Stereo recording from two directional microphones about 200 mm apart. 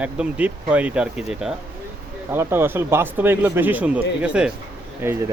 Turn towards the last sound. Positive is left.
turn(degrees=-10)  # may be behind; listen again after turning